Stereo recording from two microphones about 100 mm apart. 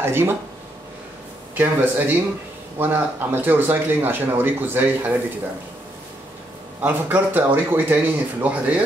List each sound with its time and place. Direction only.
0.0 s speech: 25° right (ahead or behind)
1.5 s speech: 20° right (ahead or behind)
6.8 s speech: 20° right (ahead or behind)